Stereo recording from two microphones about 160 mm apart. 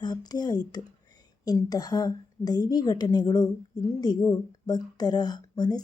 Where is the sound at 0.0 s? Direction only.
25° left (ahead or behind).